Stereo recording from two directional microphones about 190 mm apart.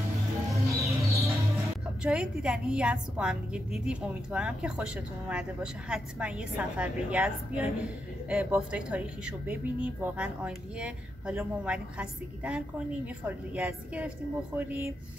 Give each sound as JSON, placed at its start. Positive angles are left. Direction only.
{"t": 0.5, "sound": "music", "side_deg": -15}
{"t": 2.0, "sound": "a woman's voice", "side_deg": -5}